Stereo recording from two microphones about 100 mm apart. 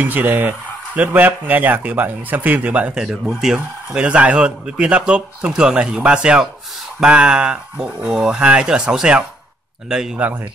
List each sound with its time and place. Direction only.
0.0 s speech: 20° right (ahead or behind)